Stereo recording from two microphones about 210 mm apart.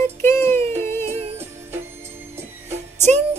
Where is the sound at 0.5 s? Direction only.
30° right (ahead or behind).